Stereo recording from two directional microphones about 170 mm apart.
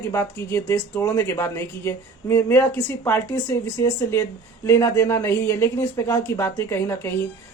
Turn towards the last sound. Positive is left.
turn(degrees=15)  # may be behind; listen again after turning